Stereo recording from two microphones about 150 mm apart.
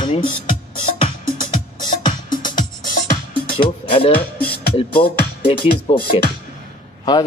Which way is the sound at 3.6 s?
35° left (ahead or behind).